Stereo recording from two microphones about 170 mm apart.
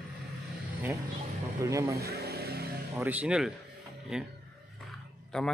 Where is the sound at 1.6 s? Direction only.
20° right (ahead or behind).